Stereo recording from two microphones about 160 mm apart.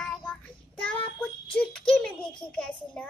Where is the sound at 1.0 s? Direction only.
10° left (ahead or behind).